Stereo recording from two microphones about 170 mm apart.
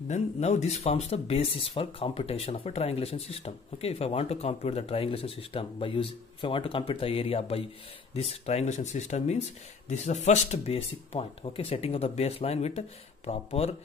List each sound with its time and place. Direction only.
0.1 s speech: 40° left (ahead or behind)